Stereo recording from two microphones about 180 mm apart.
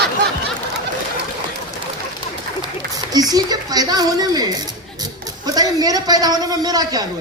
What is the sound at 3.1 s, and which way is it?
Speech, 20° right (ahead or behind).